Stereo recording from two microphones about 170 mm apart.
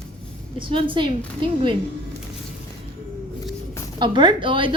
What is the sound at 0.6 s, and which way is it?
Speech, 30° right (ahead or behind).